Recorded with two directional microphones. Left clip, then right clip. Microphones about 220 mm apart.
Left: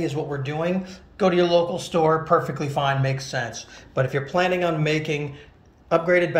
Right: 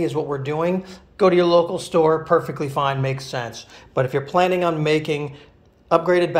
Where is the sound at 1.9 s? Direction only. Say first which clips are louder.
Right 1 dB; 15° right (ahead or behind).